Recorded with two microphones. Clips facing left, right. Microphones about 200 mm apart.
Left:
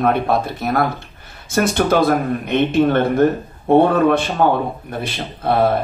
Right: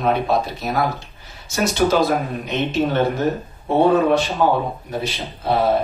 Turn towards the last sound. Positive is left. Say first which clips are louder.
# left 3 dB
turn(degrees=55)  # may be behind; listen again after turning